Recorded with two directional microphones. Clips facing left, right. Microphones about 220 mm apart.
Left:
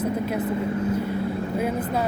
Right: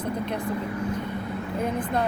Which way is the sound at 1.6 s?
5° left (ahead or behind).